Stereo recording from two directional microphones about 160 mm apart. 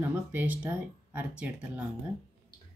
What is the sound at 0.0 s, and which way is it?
Speech, 10° right (ahead or behind).